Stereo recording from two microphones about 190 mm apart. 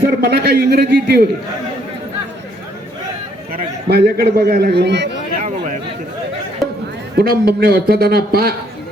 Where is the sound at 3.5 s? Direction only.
55° right (ahead or behind).